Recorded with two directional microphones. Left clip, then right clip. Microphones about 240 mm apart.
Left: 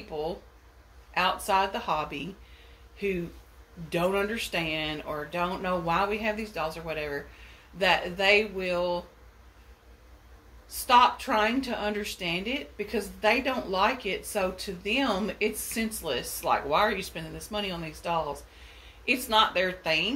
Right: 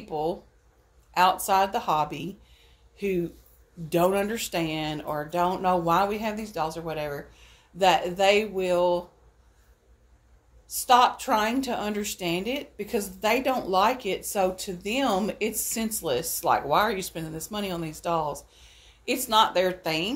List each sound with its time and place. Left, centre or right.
0.1 s a woman's voice: right
3.9 s a woman's voice: right
10.7 s a woman's voice: right